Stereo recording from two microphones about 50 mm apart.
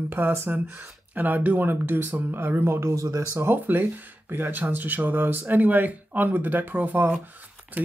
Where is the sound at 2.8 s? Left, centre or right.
Right.